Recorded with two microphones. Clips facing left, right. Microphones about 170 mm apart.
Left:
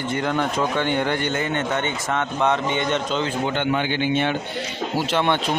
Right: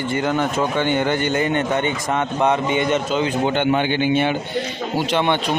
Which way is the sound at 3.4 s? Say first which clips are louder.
Right 4 dB; 25° right (ahead or behind).